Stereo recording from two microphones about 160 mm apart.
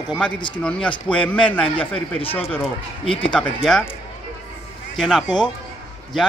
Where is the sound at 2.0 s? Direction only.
35° left (ahead or behind).